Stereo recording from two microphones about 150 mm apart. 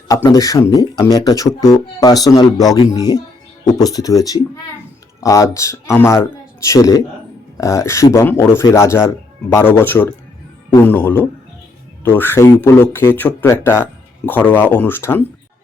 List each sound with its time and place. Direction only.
0.1 s speech: 25° left (ahead or behind)